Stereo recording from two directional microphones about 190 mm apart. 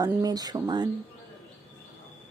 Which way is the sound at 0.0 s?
20° right (ahead or behind).